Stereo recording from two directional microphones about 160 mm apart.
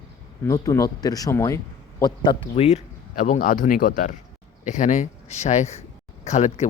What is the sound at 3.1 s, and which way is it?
Speech, 50° left (ahead or behind).